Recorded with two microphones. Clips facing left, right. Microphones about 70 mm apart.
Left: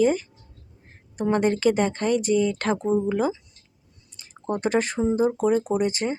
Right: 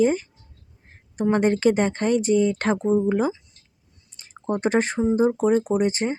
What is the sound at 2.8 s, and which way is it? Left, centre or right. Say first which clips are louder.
Speech: right 2 dB; centre.